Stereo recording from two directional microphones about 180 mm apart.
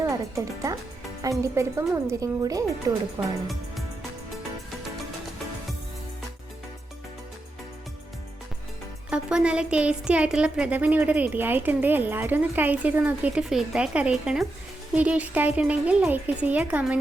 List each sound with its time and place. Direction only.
0.0 s speech: 20° right (ahead or behind)
9.0 s speech: 5° right (ahead or behind)